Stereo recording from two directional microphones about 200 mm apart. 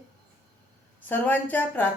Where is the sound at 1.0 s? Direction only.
10° left (ahead or behind).